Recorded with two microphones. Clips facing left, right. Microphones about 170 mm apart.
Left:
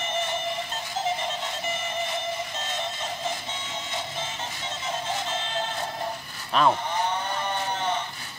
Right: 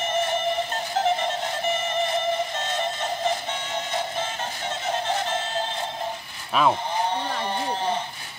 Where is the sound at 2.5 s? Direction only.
60° right (ahead or behind).